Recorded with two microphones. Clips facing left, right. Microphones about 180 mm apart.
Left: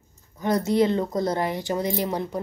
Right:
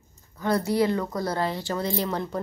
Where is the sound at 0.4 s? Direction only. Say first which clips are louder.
Left 2 dB; 20° left (ahead or behind).